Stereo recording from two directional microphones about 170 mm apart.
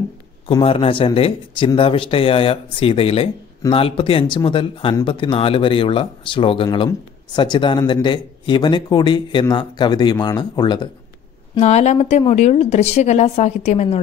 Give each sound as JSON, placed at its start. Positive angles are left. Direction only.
{"t": 0.5, "sound": "a woman's voice", "side_deg": 30}
{"t": 11.6, "sound": "a woman's voice", "side_deg": 40}